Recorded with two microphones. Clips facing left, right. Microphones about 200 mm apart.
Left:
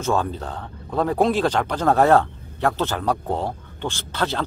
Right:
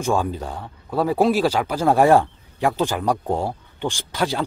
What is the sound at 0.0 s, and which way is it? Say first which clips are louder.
Speech: right 1 dB; 10° right (ahead or behind).